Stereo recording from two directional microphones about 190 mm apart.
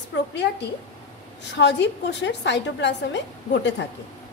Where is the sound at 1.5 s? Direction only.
65° left (ahead or behind).